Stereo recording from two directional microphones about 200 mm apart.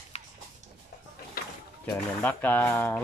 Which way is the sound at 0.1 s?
30° left (ahead or behind).